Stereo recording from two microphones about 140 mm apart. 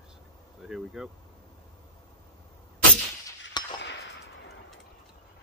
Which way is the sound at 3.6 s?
30° left (ahead or behind).